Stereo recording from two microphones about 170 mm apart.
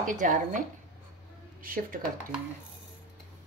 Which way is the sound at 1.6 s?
55° right (ahead or behind).